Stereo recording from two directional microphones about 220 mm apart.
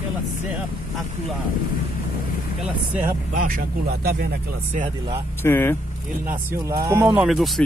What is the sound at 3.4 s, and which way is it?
Speech, 40° right (ahead or behind).